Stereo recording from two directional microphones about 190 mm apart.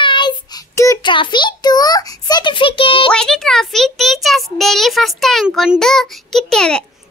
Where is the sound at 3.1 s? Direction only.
5° left (ahead or behind).